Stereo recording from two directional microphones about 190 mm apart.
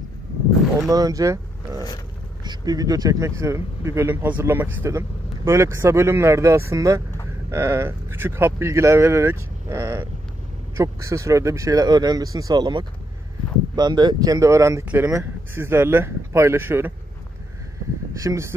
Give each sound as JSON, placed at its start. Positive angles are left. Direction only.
{"t": 0.7, "sound": "a man's voice", "side_deg": -20}
{"t": 18.1, "sound": "a man's voice", "side_deg": -15}